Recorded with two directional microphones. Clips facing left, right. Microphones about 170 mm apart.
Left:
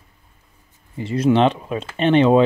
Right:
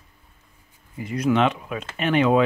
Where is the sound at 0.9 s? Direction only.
30° left (ahead or behind).